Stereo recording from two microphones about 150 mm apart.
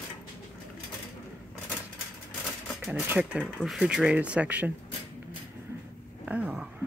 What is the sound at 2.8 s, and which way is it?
Speech, 10° right (ahead or behind).